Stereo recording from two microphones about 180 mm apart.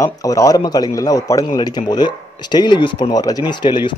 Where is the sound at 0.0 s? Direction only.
20° left (ahead or behind).